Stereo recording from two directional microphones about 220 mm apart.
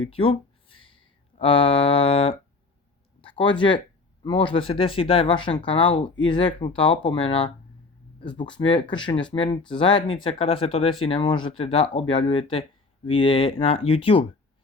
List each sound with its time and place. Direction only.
0.0 s speech: 25° left (ahead or behind)
3.2 s a sound: 25° left (ahead or behind)
4.2 s speech: 20° left (ahead or behind)